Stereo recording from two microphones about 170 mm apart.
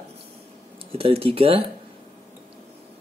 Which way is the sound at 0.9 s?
35° right (ahead or behind).